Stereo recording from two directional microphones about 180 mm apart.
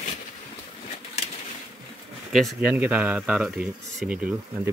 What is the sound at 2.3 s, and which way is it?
Speech, centre (ahead or behind).